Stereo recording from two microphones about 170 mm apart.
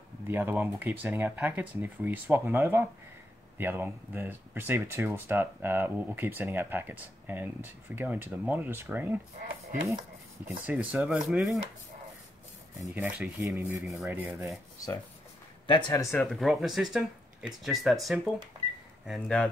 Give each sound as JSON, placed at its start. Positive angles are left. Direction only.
{"t": 0.3, "sound": "speech", "side_deg": -15}
{"t": 10.7, "sound": "speech", "side_deg": -10}
{"t": 12.8, "sound": "speech", "side_deg": -10}
{"t": 15.6, "sound": "speech", "side_deg": 30}
{"t": 16.2, "sound": "speech", "side_deg": 0}